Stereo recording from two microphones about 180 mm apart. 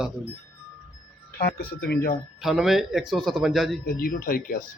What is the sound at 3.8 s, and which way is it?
Speech, 55° left (ahead or behind).